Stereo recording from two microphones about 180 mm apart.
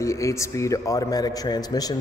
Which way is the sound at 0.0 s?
15° left (ahead or behind).